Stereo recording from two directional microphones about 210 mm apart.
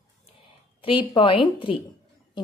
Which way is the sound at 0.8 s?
25° left (ahead or behind).